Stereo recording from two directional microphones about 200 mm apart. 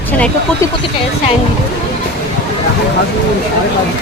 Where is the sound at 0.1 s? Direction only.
10° left (ahead or behind).